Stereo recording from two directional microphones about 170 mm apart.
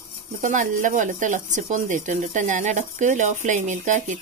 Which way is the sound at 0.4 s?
50° right (ahead or behind).